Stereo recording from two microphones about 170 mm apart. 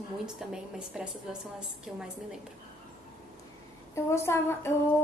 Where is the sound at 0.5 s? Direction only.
5° right (ahead or behind).